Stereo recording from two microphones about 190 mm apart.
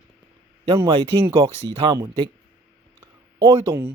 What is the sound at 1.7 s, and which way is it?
Speech, 25° right (ahead or behind).